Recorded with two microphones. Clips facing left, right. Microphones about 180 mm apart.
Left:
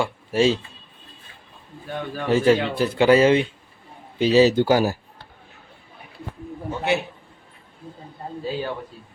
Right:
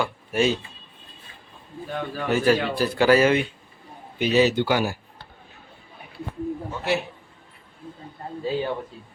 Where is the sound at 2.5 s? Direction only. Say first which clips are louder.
Left 2 dB; 20° left (ahead or behind); by 4.9 s 40° left (ahead or behind).